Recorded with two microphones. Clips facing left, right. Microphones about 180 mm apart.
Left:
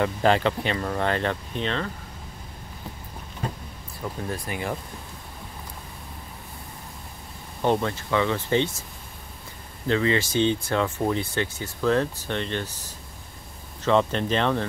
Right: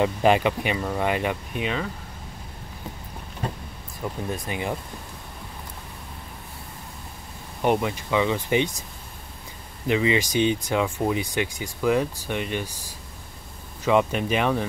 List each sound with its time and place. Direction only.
0.0 s speech: 15° right (ahead or behind)
4.0 s speech: 20° right (ahead or behind)
7.6 s speech: 15° right (ahead or behind)
9.8 s speech: 15° right (ahead or behind)